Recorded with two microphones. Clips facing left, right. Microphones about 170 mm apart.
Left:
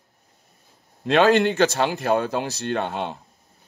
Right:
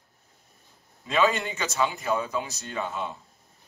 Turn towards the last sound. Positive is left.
turn(degrees=70)  # may be behind; listen again after turning